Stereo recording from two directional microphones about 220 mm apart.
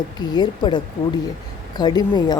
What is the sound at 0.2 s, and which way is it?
Speech, 20° left (ahead or behind).